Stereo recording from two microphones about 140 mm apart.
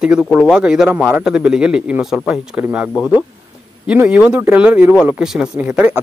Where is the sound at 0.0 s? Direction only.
5° right (ahead or behind).